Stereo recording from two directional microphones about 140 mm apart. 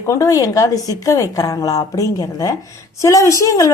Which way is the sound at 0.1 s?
25° left (ahead or behind).